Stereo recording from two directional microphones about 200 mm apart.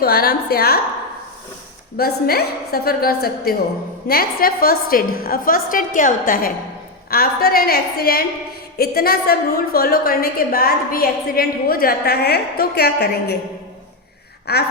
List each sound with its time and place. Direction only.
0.0 s a woman's voice: 50° left (ahead or behind)
2.0 s a woman's voice: 50° left (ahead or behind)
14.5 s speech: 55° left (ahead or behind)